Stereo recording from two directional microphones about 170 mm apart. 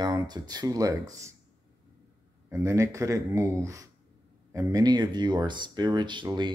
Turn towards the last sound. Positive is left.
turn(degrees=-25)  # may be behind; listen again after turning